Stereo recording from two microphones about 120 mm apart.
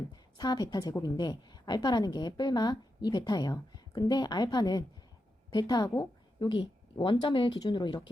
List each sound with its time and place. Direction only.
0.3 s a woman's voice: 35° left (ahead or behind)
6.4 s a woman's voice: 40° left (ahead or behind)